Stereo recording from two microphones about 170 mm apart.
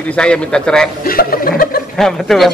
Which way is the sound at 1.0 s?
60° left (ahead or behind).